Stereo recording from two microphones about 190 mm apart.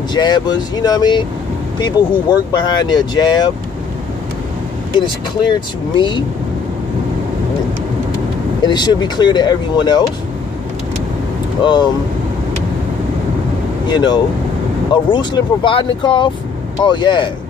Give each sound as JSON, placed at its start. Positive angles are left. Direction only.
{"t": 0.1, "sound": "speech", "side_deg": 20}
{"t": 5.0, "sound": "speech", "side_deg": 25}
{"t": 8.6, "sound": "speech", "side_deg": 25}
{"t": 11.6, "sound": "speech", "side_deg": 25}
{"t": 13.8, "sound": "speech", "side_deg": 20}